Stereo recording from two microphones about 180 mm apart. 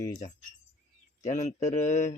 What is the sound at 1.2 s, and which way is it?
Speech, 45° left (ahead or behind).